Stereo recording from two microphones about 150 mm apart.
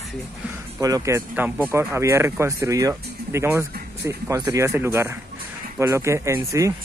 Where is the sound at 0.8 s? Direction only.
20° right (ahead or behind).